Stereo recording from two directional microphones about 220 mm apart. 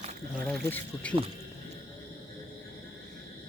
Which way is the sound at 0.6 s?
10° left (ahead or behind).